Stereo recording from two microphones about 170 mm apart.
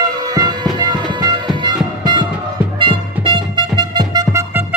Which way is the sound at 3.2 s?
25° right (ahead or behind).